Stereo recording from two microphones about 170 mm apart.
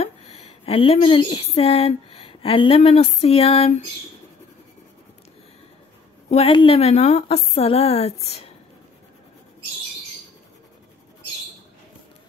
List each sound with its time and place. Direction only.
0.0 s speech: 35° left (ahead or behind)
6.3 s a woman's voice: 35° left (ahead or behind)